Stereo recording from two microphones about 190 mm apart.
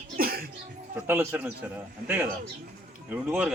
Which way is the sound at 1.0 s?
10° right (ahead or behind).